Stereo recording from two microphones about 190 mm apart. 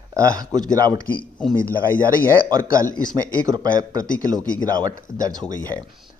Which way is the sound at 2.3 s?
20° right (ahead or behind).